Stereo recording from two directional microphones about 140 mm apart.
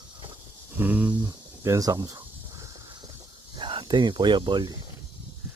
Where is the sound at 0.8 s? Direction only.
10° right (ahead or behind).